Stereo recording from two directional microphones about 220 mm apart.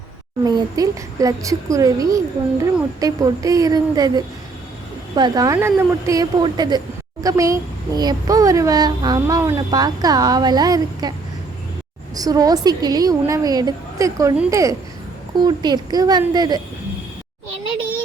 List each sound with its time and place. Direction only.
0.4 s a woman's voice: 15° right (ahead or behind)
12.1 s a woman's voice: 15° right (ahead or behind)